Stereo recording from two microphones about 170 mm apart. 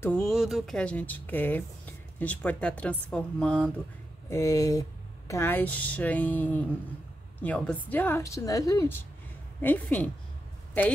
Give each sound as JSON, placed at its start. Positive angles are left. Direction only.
{"t": 0.0, "sound": "speech", "side_deg": 5}
{"t": 4.3, "sound": "speech", "side_deg": 15}